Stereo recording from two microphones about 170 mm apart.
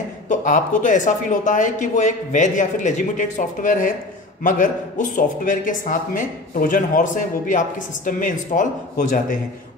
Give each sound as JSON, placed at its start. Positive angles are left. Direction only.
{"t": 0.3, "sound": "speech", "side_deg": 50}